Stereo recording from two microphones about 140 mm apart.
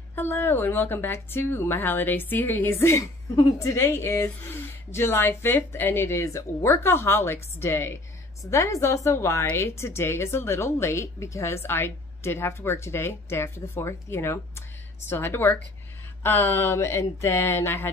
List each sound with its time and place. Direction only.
0.1 s a woman's voice: 15° left (ahead or behind)